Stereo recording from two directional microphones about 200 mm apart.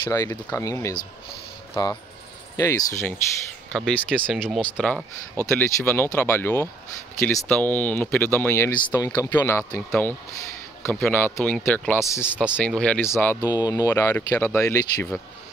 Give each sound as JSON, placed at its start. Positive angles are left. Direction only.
{"t": 0.1, "sound": "speech", "side_deg": 20}
{"t": 3.7, "sound": "speech", "side_deg": 0}